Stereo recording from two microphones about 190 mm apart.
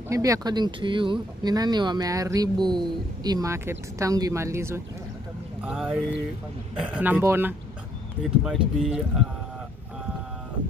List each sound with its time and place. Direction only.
0.1 s speech: 20° right (ahead or behind)
5.6 s mantra: 5° right (ahead or behind)
6.8 s speech: 5° right (ahead or behind)